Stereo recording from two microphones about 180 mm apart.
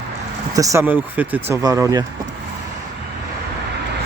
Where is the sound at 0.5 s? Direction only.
15° right (ahead or behind).